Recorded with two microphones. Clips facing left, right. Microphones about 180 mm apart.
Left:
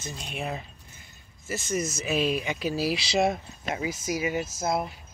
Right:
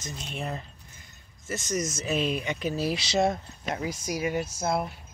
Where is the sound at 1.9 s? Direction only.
10° left (ahead or behind).